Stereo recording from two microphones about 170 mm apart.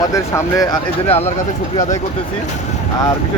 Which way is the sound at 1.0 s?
35° left (ahead or behind).